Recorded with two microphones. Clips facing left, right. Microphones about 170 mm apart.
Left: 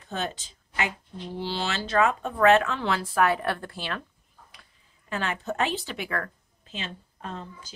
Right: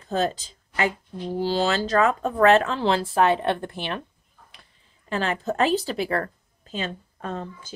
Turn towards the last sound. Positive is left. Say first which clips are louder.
# right 6 dB
turn(degrees=-55)  # may be behind; listen again after turning